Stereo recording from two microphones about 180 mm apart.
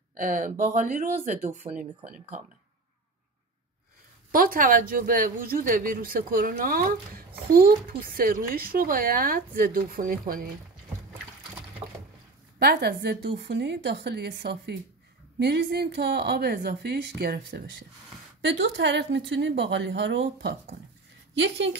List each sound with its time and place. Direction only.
0.1 s speech: 50° right (ahead or behind)
4.3 s speech: 50° right (ahead or behind)
12.5 s a woman's voice: 60° right (ahead or behind); by 20.5 s 85° right